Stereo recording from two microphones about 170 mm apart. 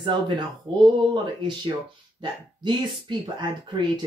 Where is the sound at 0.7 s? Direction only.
30° right (ahead or behind).